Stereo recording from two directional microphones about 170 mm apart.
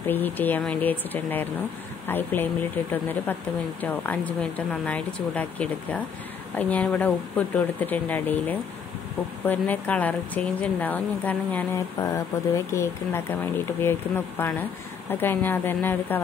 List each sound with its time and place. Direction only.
0.0 s speech: 10° left (ahead or behind)